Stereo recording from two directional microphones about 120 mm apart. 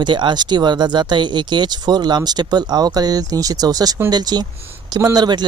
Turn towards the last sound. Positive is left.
turn(degrees=-35)  # may be behind; listen again after turning